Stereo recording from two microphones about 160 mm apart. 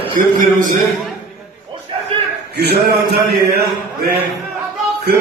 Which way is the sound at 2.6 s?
85° right.